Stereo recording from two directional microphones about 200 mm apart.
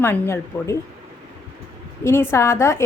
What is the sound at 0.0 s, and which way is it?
Speech, 10° left (ahead or behind).